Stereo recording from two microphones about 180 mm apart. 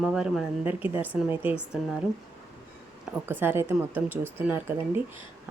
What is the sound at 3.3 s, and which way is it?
Speech, 10° right (ahead or behind).